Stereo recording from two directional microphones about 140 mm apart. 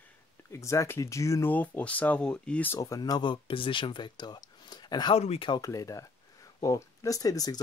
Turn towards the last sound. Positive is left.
turn(degrees=25)  # may be behind; listen again after turning